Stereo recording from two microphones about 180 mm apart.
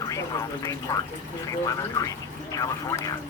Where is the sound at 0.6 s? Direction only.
20° left (ahead or behind).